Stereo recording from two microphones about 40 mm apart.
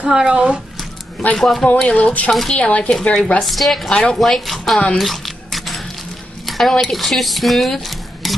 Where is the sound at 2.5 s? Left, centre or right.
Left.